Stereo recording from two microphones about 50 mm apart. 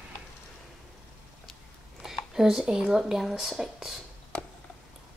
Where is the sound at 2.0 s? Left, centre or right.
Centre.